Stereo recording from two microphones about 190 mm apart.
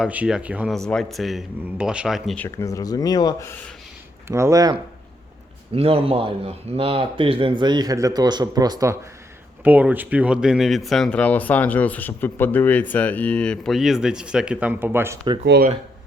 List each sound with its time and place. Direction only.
0.0 s speech: 5° right (ahead or behind); by 3.5 s 15° left (ahead or behind)
4.3 s speech: 15° right (ahead or behind)
5.7 s speech: 30° right (ahead or behind)
9.6 s speech: 10° right (ahead or behind)
15.4 s speech: 55° right (ahead or behind)